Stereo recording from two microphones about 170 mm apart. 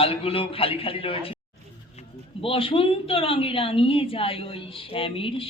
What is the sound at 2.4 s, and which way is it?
A woman's voice, 30° left (ahead or behind).